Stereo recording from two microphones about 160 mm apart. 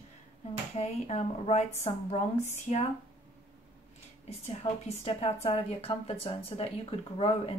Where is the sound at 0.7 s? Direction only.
40° left (ahead or behind).